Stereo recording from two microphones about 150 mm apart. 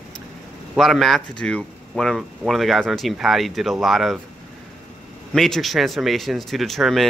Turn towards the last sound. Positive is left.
turn(degrees=0)  # may be behind; listen again after turning